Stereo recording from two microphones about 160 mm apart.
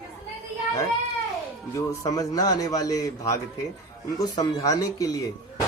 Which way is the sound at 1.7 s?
20° left (ahead or behind).